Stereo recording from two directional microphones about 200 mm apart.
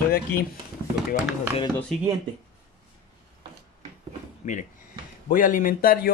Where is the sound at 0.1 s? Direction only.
45° left (ahead or behind).